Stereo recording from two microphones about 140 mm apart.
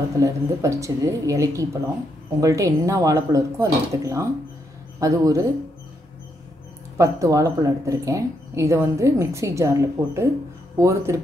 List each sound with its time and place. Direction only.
0.2 s speech: 20° right (ahead or behind)
7.0 s speech: 25° right (ahead or behind)